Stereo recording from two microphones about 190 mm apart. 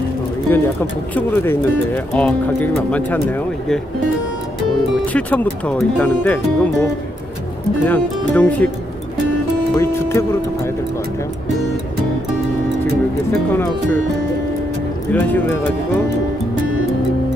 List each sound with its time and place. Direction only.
1.1 s speech: 10° left (ahead or behind)
5.1 s speech: 5° left (ahead or behind)
9.8 s speech: 15° left (ahead or behind)
13.5 s speech: 10° left (ahead or behind)
15.1 s speech: 10° left (ahead or behind)